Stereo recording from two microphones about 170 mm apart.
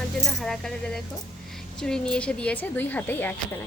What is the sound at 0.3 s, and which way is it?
A woman's voice, centre (ahead or behind).